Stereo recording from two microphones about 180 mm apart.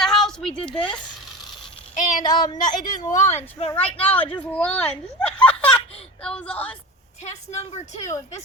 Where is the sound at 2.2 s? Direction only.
25° left (ahead or behind).